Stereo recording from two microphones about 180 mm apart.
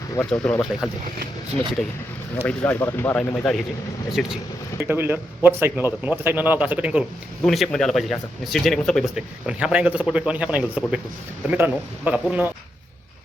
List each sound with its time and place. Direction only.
0.5 s speech: 15° left (ahead or behind)
1.5 s a man's voice: 5° left (ahead or behind)